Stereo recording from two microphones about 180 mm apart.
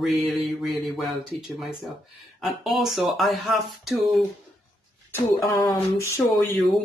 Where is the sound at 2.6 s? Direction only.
Centre (ahead or behind).